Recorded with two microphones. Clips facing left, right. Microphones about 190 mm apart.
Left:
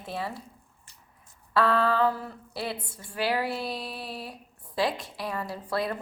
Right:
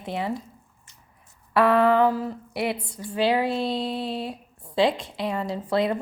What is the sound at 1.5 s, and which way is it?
A woman's voice, 20° right (ahead or behind).